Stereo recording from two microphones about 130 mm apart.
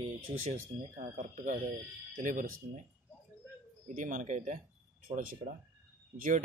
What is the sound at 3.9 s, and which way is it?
Speech, 70° right (ahead or behind).